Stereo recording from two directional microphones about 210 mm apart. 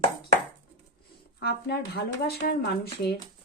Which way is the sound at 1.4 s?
50° left (ahead or behind).